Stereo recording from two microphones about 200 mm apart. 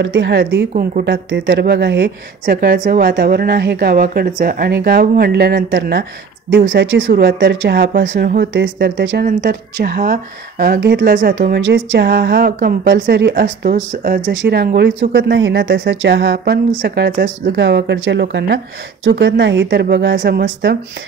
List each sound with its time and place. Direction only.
0.0 s a woman's voice: 60° right (ahead or behind)
6.7 s a woman's voice: 65° right (ahead or behind)
7.1 s a woman's voice: 50° right (ahead or behind)
8.4 s a woman's voice: 60° right (ahead or behind)
9.3 s a woman's voice: 40° right (ahead or behind)
11.5 s a woman's voice: 65° right (ahead or behind); by 14.3 s 40° right (ahead or behind)
14.3 s a woman's voice: 60° right (ahead or behind)
17.6 s a woman's voice: 60° right (ahead or behind)